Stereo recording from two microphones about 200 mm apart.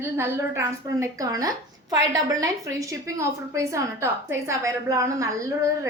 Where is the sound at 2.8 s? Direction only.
15° right (ahead or behind).